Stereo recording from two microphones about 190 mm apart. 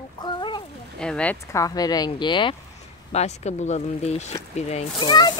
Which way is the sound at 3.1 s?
35° left (ahead or behind).